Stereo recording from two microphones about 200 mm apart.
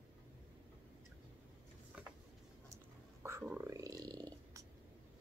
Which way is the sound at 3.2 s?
15° right (ahead or behind).